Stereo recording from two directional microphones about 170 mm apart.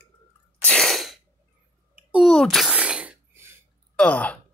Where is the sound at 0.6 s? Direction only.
5° left (ahead or behind).